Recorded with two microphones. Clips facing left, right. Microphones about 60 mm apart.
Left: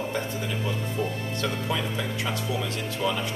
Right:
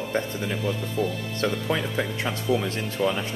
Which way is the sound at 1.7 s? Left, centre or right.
Right.